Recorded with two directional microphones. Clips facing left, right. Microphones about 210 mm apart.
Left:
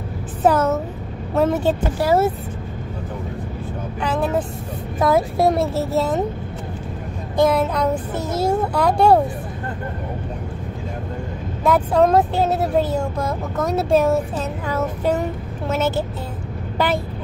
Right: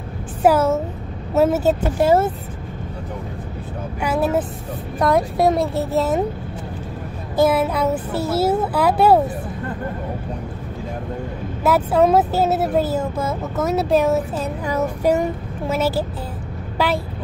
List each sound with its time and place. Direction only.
0.4 s child singing: 10° right (ahead or behind)
2.0 s speech: 20° right (ahead or behind)
4.0 s child singing: 10° right (ahead or behind)
4.9 s speech: centre (ahead or behind)
7.3 s speech: 5° right (ahead or behind)
11.6 s speech: 5° right (ahead or behind)
14.4 s child singing: 15° right (ahead or behind)
16.8 s speech: centre (ahead or behind)